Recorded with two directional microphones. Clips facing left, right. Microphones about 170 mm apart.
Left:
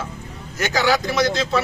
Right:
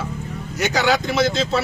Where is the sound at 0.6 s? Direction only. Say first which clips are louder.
Even; 20° right (ahead or behind).